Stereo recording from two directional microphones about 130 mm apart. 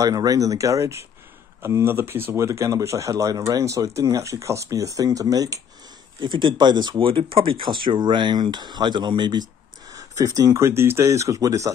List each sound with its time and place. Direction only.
0.0 s speech: 25° right (ahead or behind)